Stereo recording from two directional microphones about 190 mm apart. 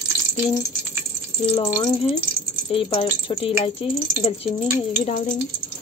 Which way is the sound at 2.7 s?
30° left (ahead or behind).